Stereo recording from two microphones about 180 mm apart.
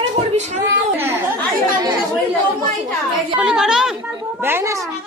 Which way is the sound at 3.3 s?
5° right (ahead or behind).